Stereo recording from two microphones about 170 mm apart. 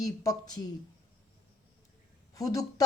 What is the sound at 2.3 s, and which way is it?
Speech, 20° left (ahead or behind).